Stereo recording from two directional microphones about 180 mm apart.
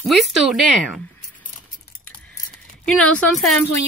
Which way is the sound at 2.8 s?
5° left (ahead or behind).